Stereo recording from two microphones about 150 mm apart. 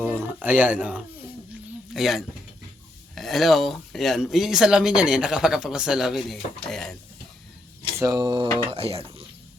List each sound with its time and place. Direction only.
0.2 s speech: 10° right (ahead or behind)
7.9 s speech: 25° right (ahead or behind)
8.7 s mechanisms: 40° right (ahead or behind)